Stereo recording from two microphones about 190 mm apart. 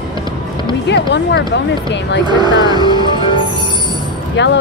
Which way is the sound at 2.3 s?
20° right (ahead or behind).